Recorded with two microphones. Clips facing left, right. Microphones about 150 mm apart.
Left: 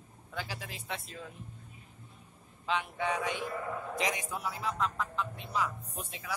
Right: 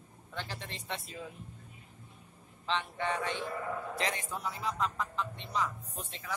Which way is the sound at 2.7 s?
10° left (ahead or behind).